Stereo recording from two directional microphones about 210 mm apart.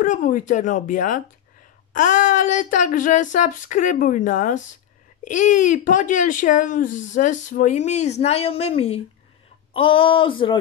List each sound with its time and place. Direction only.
0.0 s speech: 35° left (ahead or behind)